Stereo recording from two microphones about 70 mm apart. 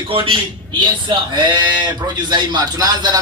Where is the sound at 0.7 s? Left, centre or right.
Right.